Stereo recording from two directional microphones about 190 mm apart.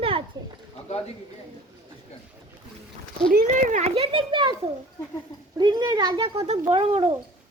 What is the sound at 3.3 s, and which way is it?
Speech, 40° right (ahead or behind).